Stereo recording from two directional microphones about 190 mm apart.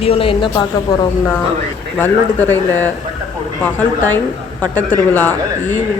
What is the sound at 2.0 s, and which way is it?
Speech, 10° left (ahead or behind).